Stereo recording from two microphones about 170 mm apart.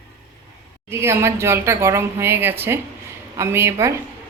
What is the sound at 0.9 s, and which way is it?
A woman's voice, 15° right (ahead or behind).